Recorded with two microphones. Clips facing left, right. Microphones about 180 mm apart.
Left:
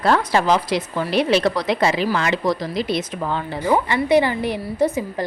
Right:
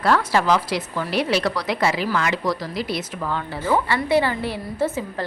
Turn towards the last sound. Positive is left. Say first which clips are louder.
# left 4 dB
turn(degrees=15)  # may be behind; listen again after turning